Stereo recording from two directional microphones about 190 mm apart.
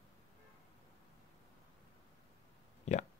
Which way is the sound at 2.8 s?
40° left (ahead or behind).